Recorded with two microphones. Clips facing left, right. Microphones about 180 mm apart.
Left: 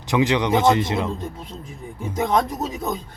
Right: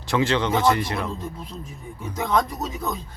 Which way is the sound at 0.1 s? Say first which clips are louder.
Left 3 dB; 15° left (ahead or behind).